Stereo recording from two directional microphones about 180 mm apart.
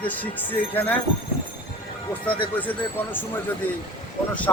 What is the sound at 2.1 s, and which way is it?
Speech, 10° left (ahead or behind).